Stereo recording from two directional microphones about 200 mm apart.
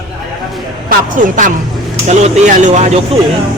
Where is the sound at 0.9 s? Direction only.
40° right (ahead or behind).